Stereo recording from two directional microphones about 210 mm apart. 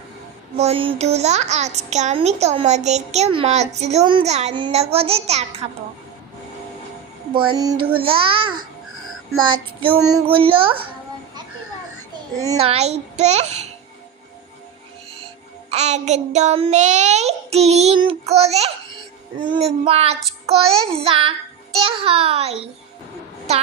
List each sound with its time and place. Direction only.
0.5 s a child's voice: 30° right (ahead or behind)
7.3 s a child's voice: 20° right (ahead or behind)
12.5 s a child's voice: 30° right (ahead or behind)
15.7 s a child's voice: 30° right (ahead or behind)